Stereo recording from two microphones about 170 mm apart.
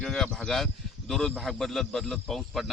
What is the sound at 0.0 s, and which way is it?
A man's voice, 5° left (ahead or behind).